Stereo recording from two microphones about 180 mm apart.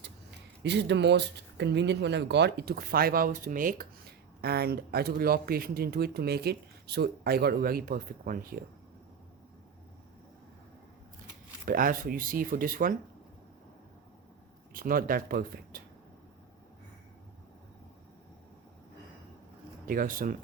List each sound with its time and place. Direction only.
0.6 s speech: 75° right (ahead or behind); by 8.5 s 50° right (ahead or behind)
11.6 s speech: 50° right (ahead or behind)
14.7 s speech: 50° right (ahead or behind)
19.8 s speech: 50° right (ahead or behind)